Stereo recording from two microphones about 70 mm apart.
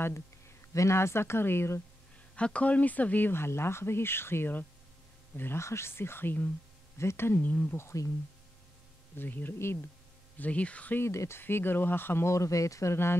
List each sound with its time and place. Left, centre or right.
0.7 s speech: left
2.3 s speech: centre
7.7 s speech: left
9.1 s speech: left
10.4 s speech: centre
11.0 s speech: left
12.9 s speech: left